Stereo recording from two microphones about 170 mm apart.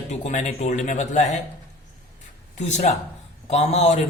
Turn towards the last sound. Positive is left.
turn(degrees=40)  # may be behind; listen again after turning